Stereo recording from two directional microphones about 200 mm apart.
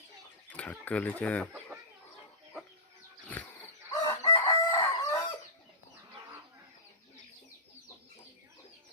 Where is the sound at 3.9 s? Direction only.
20° left (ahead or behind).